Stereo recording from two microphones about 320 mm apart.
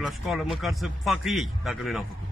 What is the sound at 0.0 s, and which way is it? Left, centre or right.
A man's voice, centre.